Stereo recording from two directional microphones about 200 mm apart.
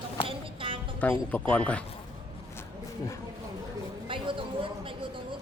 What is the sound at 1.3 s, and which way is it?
Speech, 5° left (ahead or behind).